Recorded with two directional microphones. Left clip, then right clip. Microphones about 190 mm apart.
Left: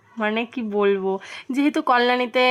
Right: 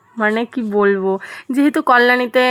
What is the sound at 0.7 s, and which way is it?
Speech, 15° right (ahead or behind).